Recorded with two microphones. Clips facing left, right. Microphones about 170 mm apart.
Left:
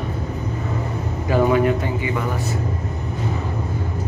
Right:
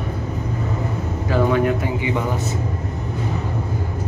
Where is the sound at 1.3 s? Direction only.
10° left (ahead or behind).